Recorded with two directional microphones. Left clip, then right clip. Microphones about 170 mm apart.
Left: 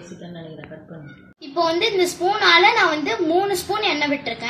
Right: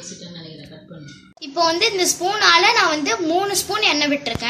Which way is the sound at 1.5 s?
20° right (ahead or behind).